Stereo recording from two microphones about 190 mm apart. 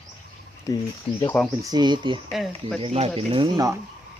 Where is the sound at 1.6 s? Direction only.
20° right (ahead or behind).